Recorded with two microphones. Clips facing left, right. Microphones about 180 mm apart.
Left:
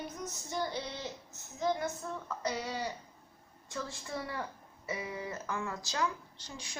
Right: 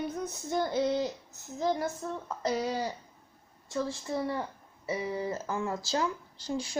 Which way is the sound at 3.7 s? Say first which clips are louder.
Right 8 dB; 25° right (ahead or behind).